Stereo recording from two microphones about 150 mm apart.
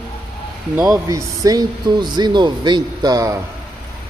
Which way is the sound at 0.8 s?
20° right (ahead or behind).